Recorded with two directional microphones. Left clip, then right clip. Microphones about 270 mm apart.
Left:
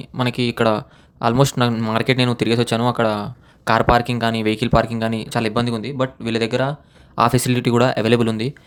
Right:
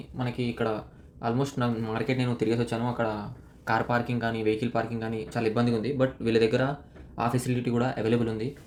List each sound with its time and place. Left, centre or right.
0.2 s speech: left